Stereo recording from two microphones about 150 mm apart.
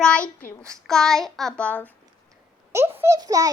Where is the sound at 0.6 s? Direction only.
5° left (ahead or behind).